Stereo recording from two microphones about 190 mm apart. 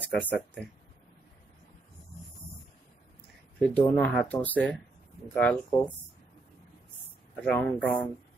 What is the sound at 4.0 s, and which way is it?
Speech, 5° left (ahead or behind).